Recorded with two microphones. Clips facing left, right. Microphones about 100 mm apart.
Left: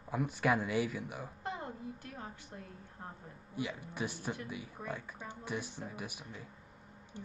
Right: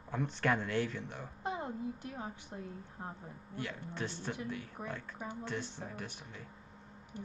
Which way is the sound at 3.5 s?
10° left (ahead or behind).